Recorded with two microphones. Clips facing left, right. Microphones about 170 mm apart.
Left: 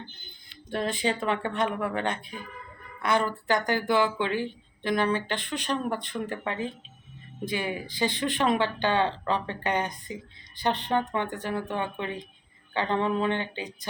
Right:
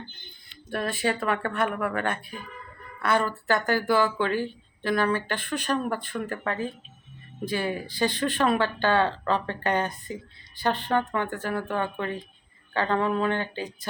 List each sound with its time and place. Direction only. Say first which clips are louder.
0.7 s speech: right 1 dB; 20° left (ahead or behind)